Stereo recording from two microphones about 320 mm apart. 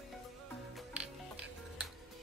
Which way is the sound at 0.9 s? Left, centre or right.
Centre.